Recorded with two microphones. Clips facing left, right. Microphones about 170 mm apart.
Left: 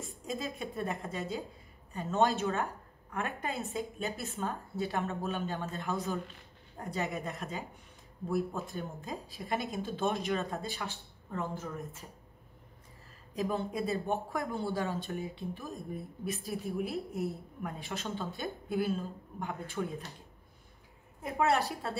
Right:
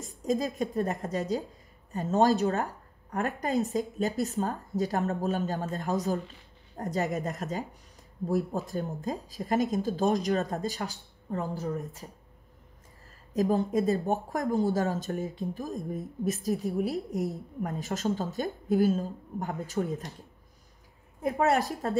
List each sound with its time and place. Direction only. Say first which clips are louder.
0.0 s a woman's voice: right 9 dB; 40° right (ahead or behind)
13.3 s speech: right 7 dB; 40° right (ahead or behind)
21.2 s a woman's voice: right 4 dB; 40° right (ahead or behind)